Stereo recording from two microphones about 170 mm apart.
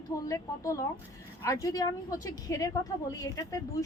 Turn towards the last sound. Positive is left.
turn(degrees=20)  # may be behind; listen again after turning